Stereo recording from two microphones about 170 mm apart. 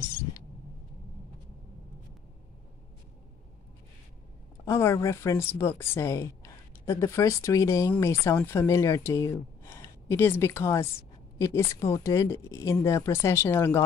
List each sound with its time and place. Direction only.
4.6 s a woman's voice: 15° left (ahead or behind)